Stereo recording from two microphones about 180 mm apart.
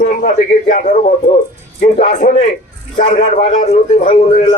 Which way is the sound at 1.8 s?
35° left (ahead or behind).